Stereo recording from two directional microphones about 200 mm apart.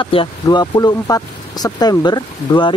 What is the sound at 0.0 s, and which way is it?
Speech, 25° left (ahead or behind).